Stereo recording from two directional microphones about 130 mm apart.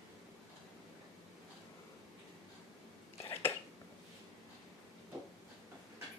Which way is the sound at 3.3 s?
20° left (ahead or behind).